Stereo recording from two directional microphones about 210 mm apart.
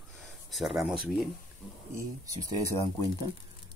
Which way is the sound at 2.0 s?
15° right (ahead or behind).